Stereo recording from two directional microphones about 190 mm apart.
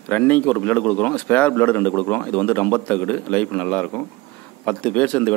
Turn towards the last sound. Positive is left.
turn(degrees=5)  # may be behind; listen again after turning